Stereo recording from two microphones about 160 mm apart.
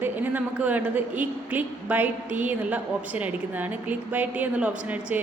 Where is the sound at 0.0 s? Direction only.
10° right (ahead or behind).